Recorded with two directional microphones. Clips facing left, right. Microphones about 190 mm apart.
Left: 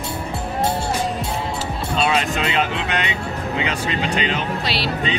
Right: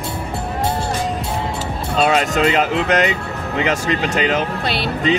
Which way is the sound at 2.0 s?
45° right (ahead or behind).